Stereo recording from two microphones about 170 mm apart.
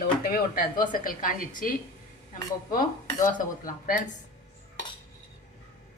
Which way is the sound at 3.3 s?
50° left (ahead or behind).